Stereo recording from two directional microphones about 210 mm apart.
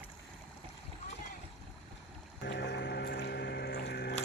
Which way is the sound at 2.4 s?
55° left (ahead or behind).